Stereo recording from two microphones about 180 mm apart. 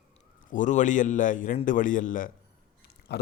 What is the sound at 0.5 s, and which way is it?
A man's voice, 45° left (ahead or behind).